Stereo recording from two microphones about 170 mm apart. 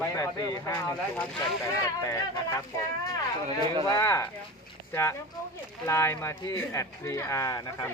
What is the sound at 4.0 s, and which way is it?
Speech, 15° left (ahead or behind).